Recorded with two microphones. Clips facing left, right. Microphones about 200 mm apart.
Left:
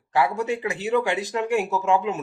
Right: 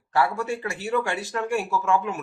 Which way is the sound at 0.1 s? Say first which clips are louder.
Left 2 dB; 20° left (ahead or behind).